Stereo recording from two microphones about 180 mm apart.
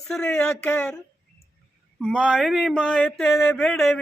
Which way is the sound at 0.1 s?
5° left (ahead or behind).